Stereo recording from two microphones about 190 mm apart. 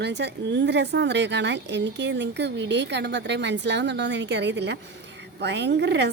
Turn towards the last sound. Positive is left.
turn(degrees=-65)  # may be behind; listen again after turning